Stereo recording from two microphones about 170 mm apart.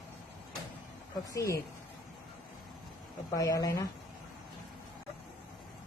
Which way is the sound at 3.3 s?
20° left (ahead or behind).